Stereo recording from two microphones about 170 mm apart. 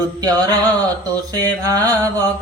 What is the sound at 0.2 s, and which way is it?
Mantra, 20° right (ahead or behind).